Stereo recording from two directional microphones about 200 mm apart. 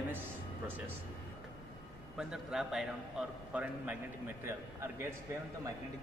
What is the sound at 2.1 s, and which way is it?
A man's voice, 5° right (ahead or behind).